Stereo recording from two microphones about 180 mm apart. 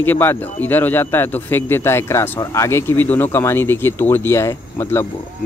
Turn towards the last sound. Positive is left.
turn(degrees=15)  # may be behind; listen again after turning